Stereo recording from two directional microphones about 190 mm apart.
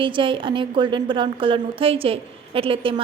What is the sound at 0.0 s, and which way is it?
A woman's voice, 25° right (ahead or behind).